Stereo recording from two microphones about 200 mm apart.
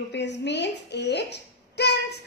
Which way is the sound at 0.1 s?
60° left (ahead or behind).